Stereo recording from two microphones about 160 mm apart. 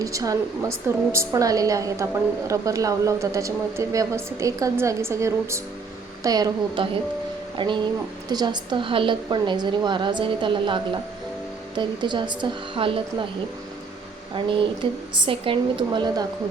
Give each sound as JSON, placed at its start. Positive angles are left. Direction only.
{"t": 0.0, "sound": "a woman's voice", "side_deg": -20}
{"t": 14.3, "sound": "a woman's voice", "side_deg": -30}